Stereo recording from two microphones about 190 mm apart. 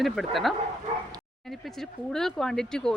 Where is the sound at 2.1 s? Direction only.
Centre (ahead or behind).